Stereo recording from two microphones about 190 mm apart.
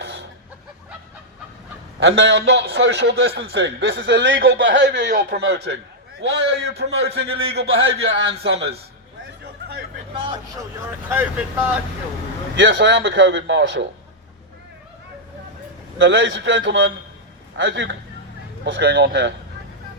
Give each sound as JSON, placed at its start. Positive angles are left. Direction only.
{"t": 0.0, "sound": "a sound", "side_deg": -60}
{"t": 2.0, "sound": "a man's voice", "side_deg": -65}
{"t": 4.9, "sound": "a man's voice", "side_deg": -55}
{"t": 7.3, "sound": "speech", "side_deg": -30}
{"t": 7.5, "sound": "a man's voice", "side_deg": -70}
{"t": 8.4, "sound": "a man's voice", "side_deg": -60}
{"t": 9.4, "sound": "a sound", "side_deg": -55}
{"t": 10.2, "sound": "speech", "side_deg": -25}
{"t": 11.1, "sound": "speech", "side_deg": -10}
{"t": 12.5, "sound": "a man's voice", "side_deg": -75}
{"t": 16.0, "sound": "a man's voice", "side_deg": -70}